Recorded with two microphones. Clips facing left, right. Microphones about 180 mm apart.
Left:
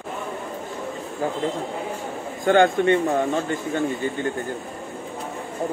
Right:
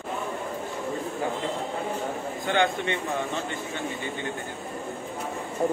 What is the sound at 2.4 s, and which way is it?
A man's voice, 45° left (ahead or behind).